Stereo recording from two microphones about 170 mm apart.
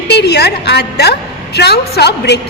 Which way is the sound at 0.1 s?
75° left (ahead or behind).